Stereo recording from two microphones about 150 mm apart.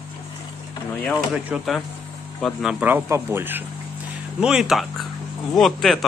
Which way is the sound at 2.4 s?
5° right (ahead or behind).